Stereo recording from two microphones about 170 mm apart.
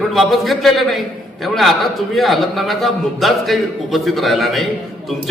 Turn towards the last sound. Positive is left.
turn(degrees=0)  # may be behind; listen again after turning